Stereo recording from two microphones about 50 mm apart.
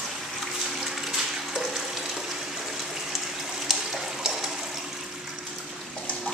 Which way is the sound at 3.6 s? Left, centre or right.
Centre.